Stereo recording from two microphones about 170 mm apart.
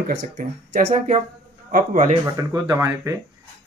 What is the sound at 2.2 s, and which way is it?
Speech, 20° right (ahead or behind).